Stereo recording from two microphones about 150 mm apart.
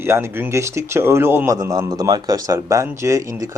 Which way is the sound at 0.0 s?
15° right (ahead or behind).